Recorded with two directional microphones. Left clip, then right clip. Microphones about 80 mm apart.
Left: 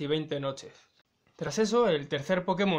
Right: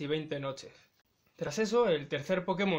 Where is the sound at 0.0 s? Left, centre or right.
Left.